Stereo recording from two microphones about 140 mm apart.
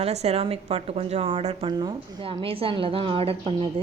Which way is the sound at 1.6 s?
35° right (ahead or behind).